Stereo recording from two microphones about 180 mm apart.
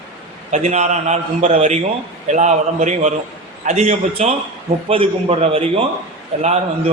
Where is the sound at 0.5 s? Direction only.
40° right (ahead or behind).